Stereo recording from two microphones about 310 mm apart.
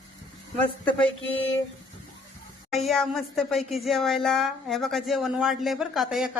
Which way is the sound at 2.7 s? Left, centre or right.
Centre.